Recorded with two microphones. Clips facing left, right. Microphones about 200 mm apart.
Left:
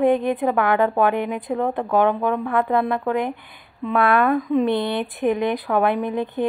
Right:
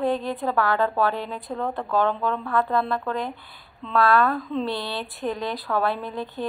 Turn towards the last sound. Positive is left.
turn(degrees=15)  # may be behind; listen again after turning